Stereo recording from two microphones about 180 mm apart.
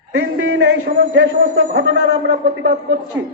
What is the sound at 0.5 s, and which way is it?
A man's voice, 80° right.